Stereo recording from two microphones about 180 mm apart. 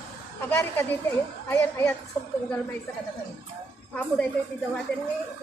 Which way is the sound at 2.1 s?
10° left (ahead or behind).